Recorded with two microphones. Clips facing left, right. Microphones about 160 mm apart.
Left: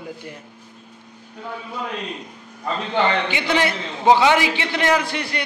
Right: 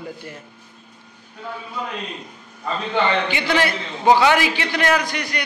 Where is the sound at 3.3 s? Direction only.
20° left (ahead or behind).